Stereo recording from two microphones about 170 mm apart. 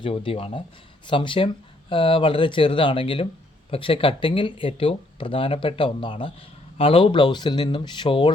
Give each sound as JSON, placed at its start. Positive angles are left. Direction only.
{"t": 0.0, "sound": "speech", "side_deg": 30}